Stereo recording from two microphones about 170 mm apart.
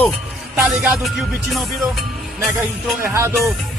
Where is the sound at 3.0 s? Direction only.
15° right (ahead or behind).